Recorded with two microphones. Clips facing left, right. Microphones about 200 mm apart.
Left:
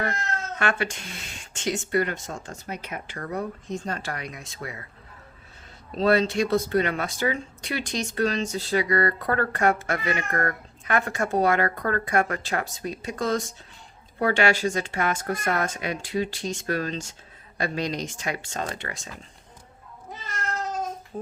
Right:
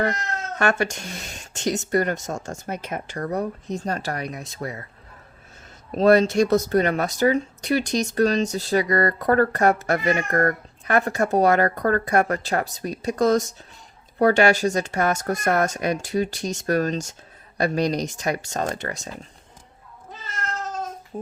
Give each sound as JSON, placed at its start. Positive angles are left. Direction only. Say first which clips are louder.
{"t": 0.6, "sound": "speech", "louder": "right 5 dB", "side_deg": -45}
{"t": 5.9, "sound": "speech", "louder": "right 5 dB", "side_deg": -45}